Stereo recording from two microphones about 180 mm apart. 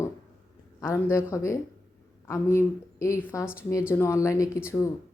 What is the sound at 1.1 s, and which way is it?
Speech, 15° left (ahead or behind).